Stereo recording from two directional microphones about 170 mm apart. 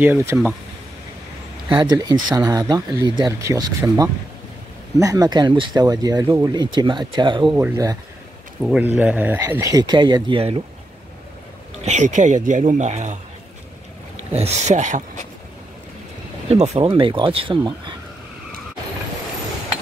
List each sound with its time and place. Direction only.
0.0 s speech: 15° right (ahead or behind)
1.7 s speech: 25° right (ahead or behind)
8.6 s speech: 5° right (ahead or behind); by 10.6 s 30° right (ahead or behind)
11.8 s speech: 45° right (ahead or behind)
14.3 s speech: 40° right (ahead or behind)
16.5 s speech: 40° right (ahead or behind)